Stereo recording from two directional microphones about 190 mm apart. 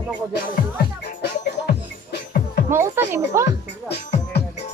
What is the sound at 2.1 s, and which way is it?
Music, 50° left (ahead or behind).